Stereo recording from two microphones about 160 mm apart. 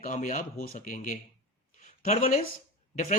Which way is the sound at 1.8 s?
55° left (ahead or behind).